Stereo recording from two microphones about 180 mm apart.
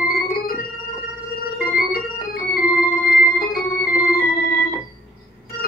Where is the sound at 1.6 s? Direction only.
55° left (ahead or behind).